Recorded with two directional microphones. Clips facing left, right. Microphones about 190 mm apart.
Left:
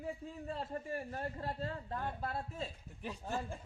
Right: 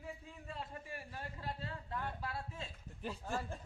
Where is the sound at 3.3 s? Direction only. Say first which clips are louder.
Left 2 dB; 15° left (ahead or behind).